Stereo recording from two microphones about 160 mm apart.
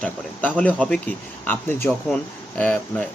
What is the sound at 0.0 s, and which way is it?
Speech, 10° left (ahead or behind).